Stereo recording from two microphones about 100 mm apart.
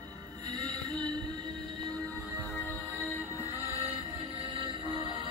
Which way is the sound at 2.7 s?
20° left (ahead or behind).